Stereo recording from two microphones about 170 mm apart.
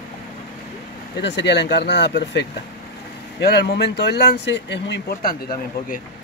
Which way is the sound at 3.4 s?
75° left (ahead or behind).